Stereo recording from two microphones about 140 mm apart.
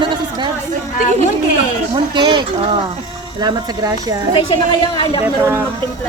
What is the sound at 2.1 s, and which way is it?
Speech, 35° right (ahead or behind).